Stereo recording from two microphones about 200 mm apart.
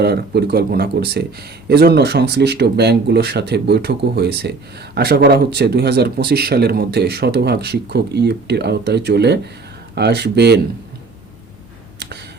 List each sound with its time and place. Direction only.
0.0 s speech: 55° right (ahead or behind)